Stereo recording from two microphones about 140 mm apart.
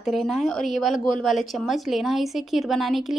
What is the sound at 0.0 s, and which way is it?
A woman's voice, centre (ahead or behind).